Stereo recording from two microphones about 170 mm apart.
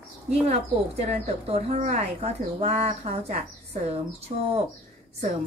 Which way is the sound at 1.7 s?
40° right (ahead or behind).